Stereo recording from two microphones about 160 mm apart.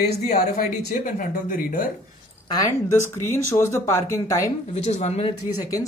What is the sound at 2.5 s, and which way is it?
Speech, 20° left (ahead or behind).